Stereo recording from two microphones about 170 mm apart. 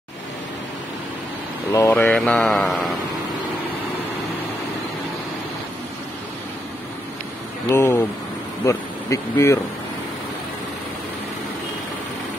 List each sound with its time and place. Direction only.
1.7 s speech: 15° left (ahead or behind)
7.7 s speech: 15° left (ahead or behind)